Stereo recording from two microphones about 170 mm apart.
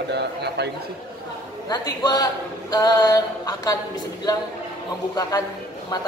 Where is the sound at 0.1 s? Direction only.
80° right.